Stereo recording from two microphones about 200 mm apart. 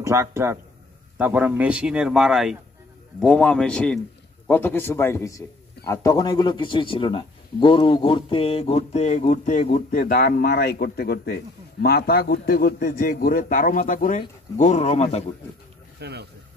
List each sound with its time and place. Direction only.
0.0 s a man's voice: 15° right (ahead or behind); by 15.3 s 30° left (ahead or behind)
16.0 s speech: 55° right (ahead or behind)